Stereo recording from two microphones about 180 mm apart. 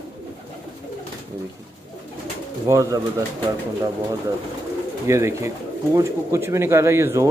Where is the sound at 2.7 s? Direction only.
15° right (ahead or behind).